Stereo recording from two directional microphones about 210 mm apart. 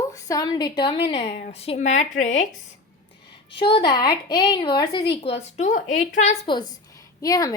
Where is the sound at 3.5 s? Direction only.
25° left (ahead or behind).